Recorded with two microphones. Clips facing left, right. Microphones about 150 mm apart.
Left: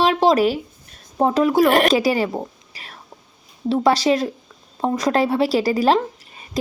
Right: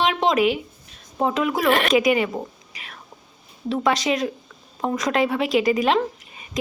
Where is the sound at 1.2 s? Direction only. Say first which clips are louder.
Left 5 dB; 35° left (ahead or behind).